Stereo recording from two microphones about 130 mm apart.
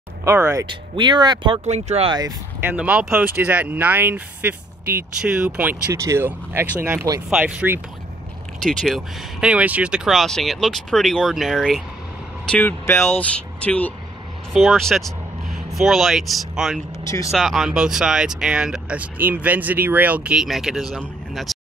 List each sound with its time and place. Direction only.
0.2 s speech: 20° right (ahead or behind)
0.7 s speech: 35° right (ahead or behind)
1.6 s speech: 60° right (ahead or behind)
2.0 s speech: 30° right (ahead or behind)
2.6 s speech: 10° right (ahead or behind)
8.6 s speech: centre (ahead or behind)
12.4 s speech: 15° left (ahead or behind)
14.5 s speech: centre (ahead or behind)